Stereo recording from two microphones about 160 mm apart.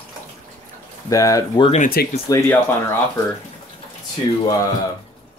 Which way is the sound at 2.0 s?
75° left (ahead or behind).